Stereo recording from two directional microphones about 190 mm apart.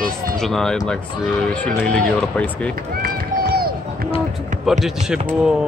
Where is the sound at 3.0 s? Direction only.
50° right (ahead or behind).